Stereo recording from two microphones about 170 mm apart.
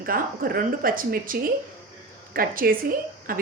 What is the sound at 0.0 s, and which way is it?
Speech, 60° right (ahead or behind).